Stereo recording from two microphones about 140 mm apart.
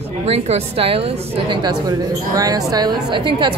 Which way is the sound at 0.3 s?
45° right (ahead or behind).